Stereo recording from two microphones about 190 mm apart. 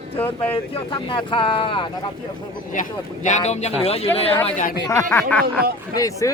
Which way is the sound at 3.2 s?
40° left (ahead or behind).